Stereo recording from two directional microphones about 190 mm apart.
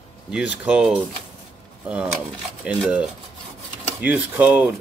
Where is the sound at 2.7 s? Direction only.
5° right (ahead or behind).